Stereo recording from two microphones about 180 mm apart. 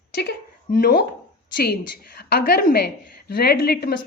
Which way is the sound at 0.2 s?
60° left (ahead or behind).